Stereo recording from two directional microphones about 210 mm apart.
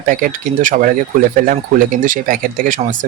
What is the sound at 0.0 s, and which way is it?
Speech, 40° right (ahead or behind).